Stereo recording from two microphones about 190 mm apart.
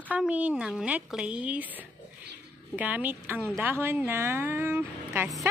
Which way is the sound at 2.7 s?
10° right (ahead or behind).